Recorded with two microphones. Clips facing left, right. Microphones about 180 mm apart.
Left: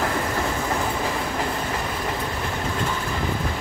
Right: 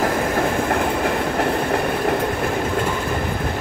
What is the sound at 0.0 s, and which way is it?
Train, 50° right (ahead or behind).